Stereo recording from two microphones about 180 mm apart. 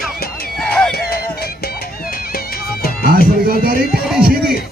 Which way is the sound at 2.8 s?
55° left (ahead or behind).